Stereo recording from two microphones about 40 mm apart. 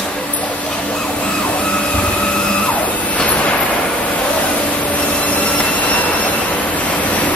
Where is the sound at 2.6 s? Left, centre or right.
Left.